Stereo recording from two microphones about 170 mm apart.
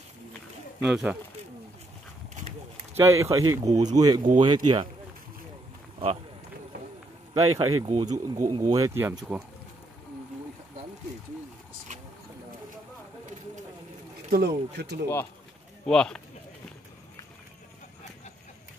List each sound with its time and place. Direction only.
0.8 s speech: 5° right (ahead or behind)
3.0 s speech: 15° right (ahead or behind)
7.3 s speech: 20° right (ahead or behind)
14.3 s speech: 75° right (ahead or behind)
15.8 s speech: 5° left (ahead or behind)